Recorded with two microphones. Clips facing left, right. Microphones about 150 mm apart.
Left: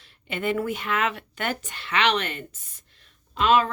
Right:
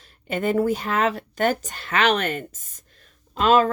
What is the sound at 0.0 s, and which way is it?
Speech, 45° right (ahead or behind).